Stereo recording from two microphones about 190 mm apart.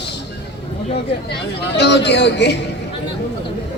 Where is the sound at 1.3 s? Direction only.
60° left (ahead or behind).